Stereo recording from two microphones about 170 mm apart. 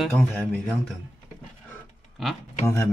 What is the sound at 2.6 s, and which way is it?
Speech, 15° left (ahead or behind).